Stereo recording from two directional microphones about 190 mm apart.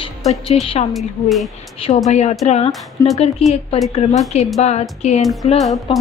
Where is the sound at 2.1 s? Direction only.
35° left (ahead or behind).